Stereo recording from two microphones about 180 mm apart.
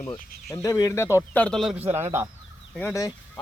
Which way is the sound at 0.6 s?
20° left (ahead or behind).